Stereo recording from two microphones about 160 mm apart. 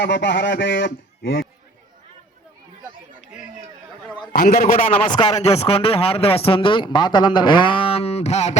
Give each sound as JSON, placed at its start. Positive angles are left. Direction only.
{"t": 0.0, "sound": "speech", "side_deg": 90}
{"t": 4.3, "sound": "a man's voice", "side_deg": 70}
{"t": 4.5, "sound": "a man's voice", "side_deg": 50}
{"t": 5.0, "sound": "speech", "side_deg": 30}
{"t": 5.5, "sound": "speech", "side_deg": 40}